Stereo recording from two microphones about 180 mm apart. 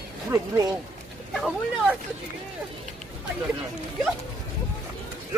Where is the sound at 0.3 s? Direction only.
20° right (ahead or behind).